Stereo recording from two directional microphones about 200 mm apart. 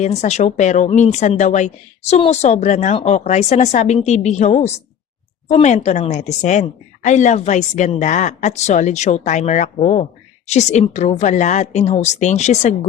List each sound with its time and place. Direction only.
0.0 s a woman's voice: 35° left (ahead or behind)